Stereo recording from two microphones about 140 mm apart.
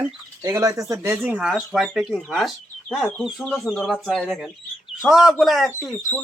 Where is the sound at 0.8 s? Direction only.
20° right (ahead or behind).